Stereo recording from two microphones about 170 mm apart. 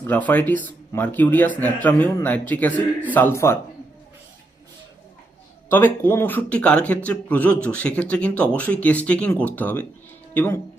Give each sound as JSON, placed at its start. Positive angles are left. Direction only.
{"t": 0.0, "sound": "speech", "side_deg": 10}
{"t": 5.6, "sound": "speech", "side_deg": 10}